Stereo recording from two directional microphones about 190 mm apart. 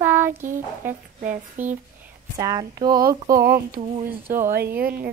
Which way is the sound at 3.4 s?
50° right (ahead or behind).